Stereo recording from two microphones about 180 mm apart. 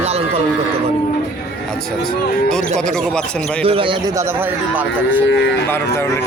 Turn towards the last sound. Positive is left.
turn(degrees=-10)  # may be behind; listen again after turning